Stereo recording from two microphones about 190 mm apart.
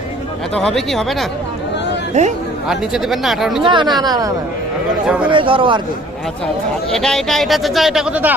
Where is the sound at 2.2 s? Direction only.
35° right (ahead or behind).